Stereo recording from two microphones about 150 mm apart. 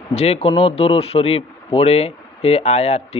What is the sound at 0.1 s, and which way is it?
A man's voice, 45° left (ahead or behind).